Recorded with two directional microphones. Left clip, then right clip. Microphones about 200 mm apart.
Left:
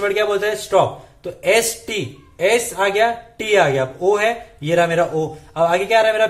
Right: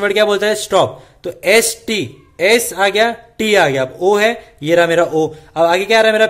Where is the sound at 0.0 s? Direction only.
45° right (ahead or behind).